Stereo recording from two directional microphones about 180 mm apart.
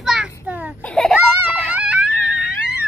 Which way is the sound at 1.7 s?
5° right (ahead or behind).